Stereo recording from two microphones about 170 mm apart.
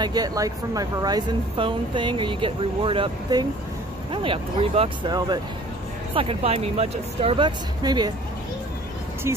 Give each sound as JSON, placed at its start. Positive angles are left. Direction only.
{"t": 0.0, "sound": "a woman's voice", "side_deg": -25}